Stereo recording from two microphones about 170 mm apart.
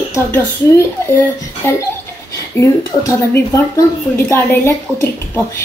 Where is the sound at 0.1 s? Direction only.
15° left (ahead or behind).